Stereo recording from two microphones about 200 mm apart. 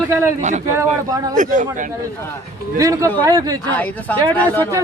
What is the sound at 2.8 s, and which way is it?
Speech, 15° right (ahead or behind).